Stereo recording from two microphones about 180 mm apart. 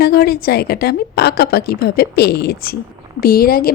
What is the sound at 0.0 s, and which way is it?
A woman's voice, 60° left (ahead or behind).